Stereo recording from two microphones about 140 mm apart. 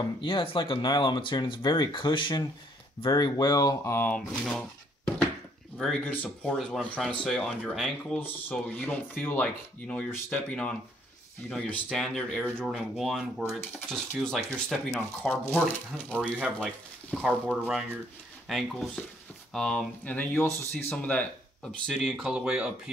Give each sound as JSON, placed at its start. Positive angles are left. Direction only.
{"t": 0.2, "sound": "speech", "side_deg": 40}
{"t": 4.3, "sound": "speech", "side_deg": 5}
{"t": 15.2, "sound": "speech", "side_deg": 15}
{"t": 16.4, "sound": "speech", "side_deg": -5}